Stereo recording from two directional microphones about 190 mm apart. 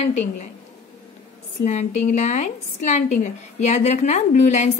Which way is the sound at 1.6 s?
40° left (ahead or behind).